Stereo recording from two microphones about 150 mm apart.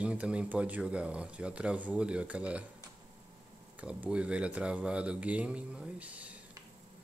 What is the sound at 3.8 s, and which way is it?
Speech, 10° right (ahead or behind).